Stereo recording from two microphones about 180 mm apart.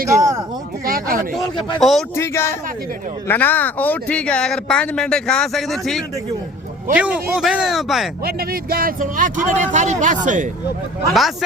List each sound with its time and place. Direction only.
0.9 s a sound: 55° right (ahead or behind)
1.8 s speech: centre (ahead or behind)
2.1 s speech: 15° left (ahead or behind); by 8.1 s centre (ahead or behind)
8.2 s speech: 55° right (ahead or behind)
11.1 s speech: centre (ahead or behind)